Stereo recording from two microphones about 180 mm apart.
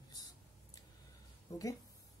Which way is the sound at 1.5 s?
20° left (ahead or behind).